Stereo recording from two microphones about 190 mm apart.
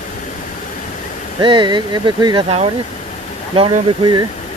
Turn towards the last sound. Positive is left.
turn(degrees=-25)  # may be behind; listen again after turning